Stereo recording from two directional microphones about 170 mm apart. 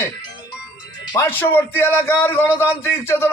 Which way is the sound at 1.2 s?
10° left (ahead or behind).